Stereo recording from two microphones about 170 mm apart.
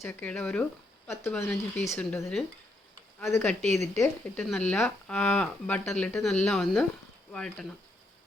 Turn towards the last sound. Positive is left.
turn(degrees=5)  # may be behind; listen again after turning